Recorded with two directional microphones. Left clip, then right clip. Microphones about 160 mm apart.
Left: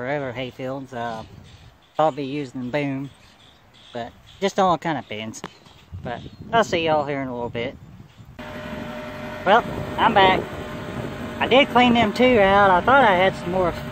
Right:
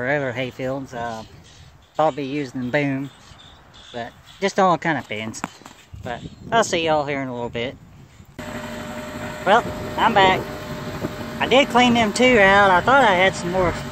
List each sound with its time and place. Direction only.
0.0 s speech: 5° left (ahead or behind)
6.0 s speech: centre (ahead or behind)
8.4 s vehicle: 35° left (ahead or behind)
9.4 s speech: 5° left (ahead or behind)